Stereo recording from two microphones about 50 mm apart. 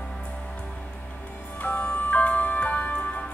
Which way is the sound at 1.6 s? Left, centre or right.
Left.